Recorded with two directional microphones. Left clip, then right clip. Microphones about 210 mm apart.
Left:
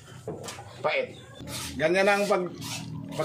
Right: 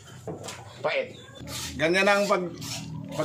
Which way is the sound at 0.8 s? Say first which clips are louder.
Even; 20° left (ahead or behind).